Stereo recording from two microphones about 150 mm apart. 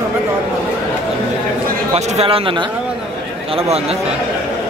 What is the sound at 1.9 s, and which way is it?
Speech, 45° right (ahead or behind).